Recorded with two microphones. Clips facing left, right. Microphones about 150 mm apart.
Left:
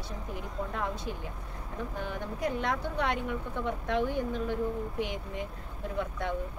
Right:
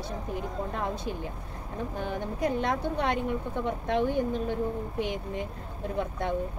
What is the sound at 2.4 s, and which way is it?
A woman's voice, 35° right (ahead or behind).